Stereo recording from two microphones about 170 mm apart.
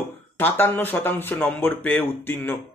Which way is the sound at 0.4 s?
10° left (ahead or behind).